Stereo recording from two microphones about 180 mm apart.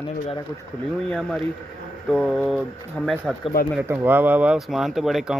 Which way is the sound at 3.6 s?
55° left (ahead or behind).